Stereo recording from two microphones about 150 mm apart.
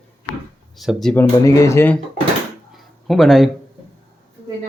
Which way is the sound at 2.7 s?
Centre (ahead or behind).